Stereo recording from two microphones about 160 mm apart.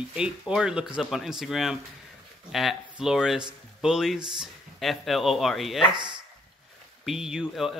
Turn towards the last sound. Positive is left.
turn(degrees=0)  # may be behind; listen again after turning